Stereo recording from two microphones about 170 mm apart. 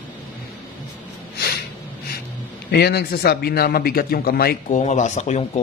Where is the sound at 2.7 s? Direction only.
70° left (ahead or behind).